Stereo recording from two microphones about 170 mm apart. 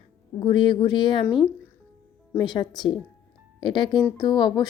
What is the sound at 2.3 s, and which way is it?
A woman's voice, 25° left (ahead or behind).